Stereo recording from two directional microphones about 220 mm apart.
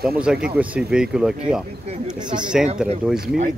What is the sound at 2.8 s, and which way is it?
Speech, 5° right (ahead or behind).